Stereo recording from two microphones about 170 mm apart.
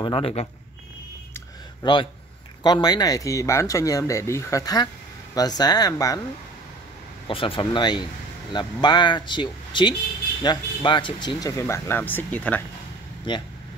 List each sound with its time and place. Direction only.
0.0 s speech: 30° left (ahead or behind)
1.3 s a sound: 25° left (ahead or behind)
2.6 s speech: 25° left (ahead or behind)
7.2 s speech: 30° left (ahead or behind); by 12.6 s 10° left (ahead or behind)
13.3 s speech: 30° left (ahead or behind)